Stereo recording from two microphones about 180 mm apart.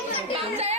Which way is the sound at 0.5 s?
35° right (ahead or behind).